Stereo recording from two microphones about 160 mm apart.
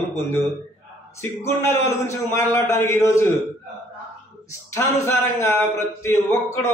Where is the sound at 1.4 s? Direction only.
15° left (ahead or behind).